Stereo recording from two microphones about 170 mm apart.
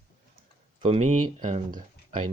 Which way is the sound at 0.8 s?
40° right (ahead or behind).